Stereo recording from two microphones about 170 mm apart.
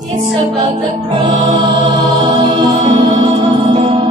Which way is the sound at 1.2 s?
20° right (ahead or behind).